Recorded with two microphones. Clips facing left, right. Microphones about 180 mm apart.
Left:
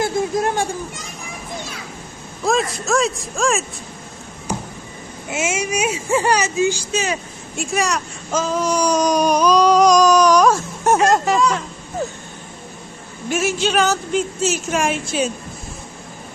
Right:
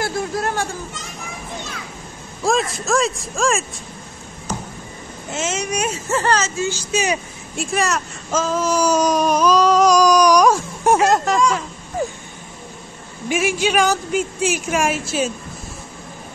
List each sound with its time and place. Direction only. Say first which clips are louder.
0.0 s a sound: left 3 dB; 20° left (ahead or behind)
2.4 s speech: even; centre (ahead or behind)
4.5 s a sound: left 2 dB; 10° left (ahead or behind)
5.3 s speech: left 2 dB; 10° left (ahead or behind)
6.9 s speech: right 2 dB; 15° right (ahead or behind)
7.5 s speech: even; centre (ahead or behind)
10.9 s speech: even; centre (ahead or behind)
12.0 s a sound: right 1 dB; 10° right (ahead or behind)
13.3 s speech: even; 10° right (ahead or behind)